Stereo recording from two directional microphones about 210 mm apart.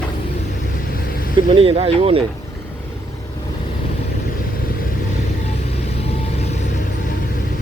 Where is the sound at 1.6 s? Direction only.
25° right (ahead or behind).